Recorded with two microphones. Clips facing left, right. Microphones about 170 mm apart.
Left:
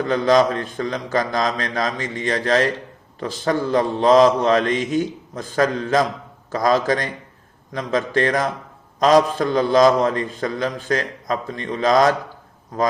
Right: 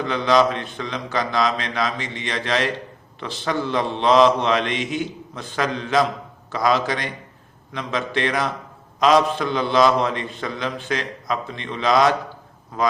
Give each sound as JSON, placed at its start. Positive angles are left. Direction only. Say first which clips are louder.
{"t": 0.0, "sound": "a man's voice", "louder": "left 2 dB", "side_deg": 45}